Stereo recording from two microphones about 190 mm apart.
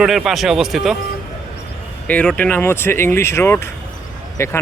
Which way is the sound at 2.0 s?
5° left (ahead or behind).